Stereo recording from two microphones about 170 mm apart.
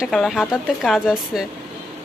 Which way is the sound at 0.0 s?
Centre (ahead or behind).